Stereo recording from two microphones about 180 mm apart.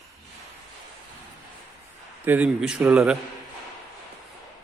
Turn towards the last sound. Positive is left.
turn(degrees=-5)  # may be behind; listen again after turning